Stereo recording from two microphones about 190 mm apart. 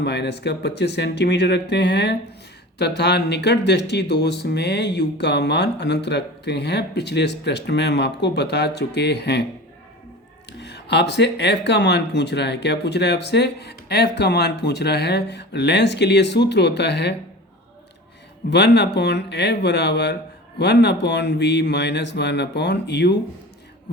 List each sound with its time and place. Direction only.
0.0 s speech: 60° left (ahead or behind)
10.6 s speech: 60° left (ahead or behind)
18.5 s speech: 60° left (ahead or behind)